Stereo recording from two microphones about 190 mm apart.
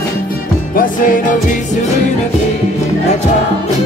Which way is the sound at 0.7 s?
45° left (ahead or behind).